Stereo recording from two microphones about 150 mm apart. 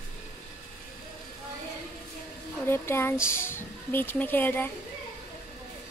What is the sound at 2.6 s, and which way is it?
Speech, 15° left (ahead or behind).